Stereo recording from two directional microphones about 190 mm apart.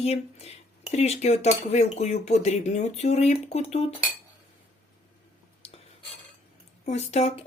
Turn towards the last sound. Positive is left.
turn(degrees=35)  # may be behind; listen again after turning